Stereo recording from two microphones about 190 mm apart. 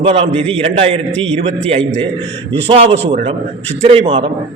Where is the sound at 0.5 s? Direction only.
30° right (ahead or behind).